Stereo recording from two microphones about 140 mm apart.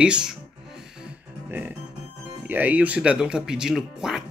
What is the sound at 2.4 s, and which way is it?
Speech, 10° right (ahead or behind).